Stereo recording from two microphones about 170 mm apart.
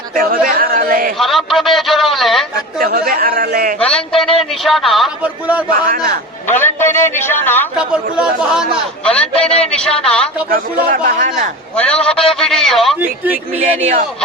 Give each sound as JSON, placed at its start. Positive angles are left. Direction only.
{"t": 0.2, "sound": "speech", "side_deg": -55}
{"t": 1.2, "sound": "a man's voice", "side_deg": 0}
{"t": 2.8, "sound": "speech", "side_deg": -60}
{"t": 3.8, "sound": "a man's voice", "side_deg": 5}
{"t": 5.6, "sound": "speech", "side_deg": -60}
{"t": 6.5, "sound": "a man's voice", "side_deg": 10}
{"t": 7.8, "sound": "a man's voice", "side_deg": -5}
{"t": 9.0, "sound": "a man's voice", "side_deg": 5}
{"t": 10.5, "sound": "speech", "side_deg": -55}
{"t": 11.8, "sound": "a man's voice", "side_deg": 5}